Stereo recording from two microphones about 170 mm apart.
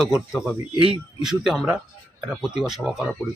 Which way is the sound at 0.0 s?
Centre (ahead or behind).